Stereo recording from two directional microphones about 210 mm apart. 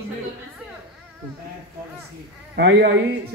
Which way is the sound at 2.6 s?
55° right (ahead or behind).